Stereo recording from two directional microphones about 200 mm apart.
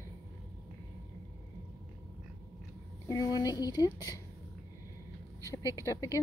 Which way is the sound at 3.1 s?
15° left (ahead or behind).